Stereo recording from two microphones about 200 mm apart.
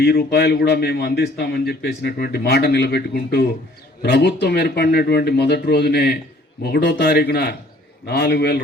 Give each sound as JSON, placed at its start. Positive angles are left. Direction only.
{"t": 0.0, "sound": "a man's voice", "side_deg": 55}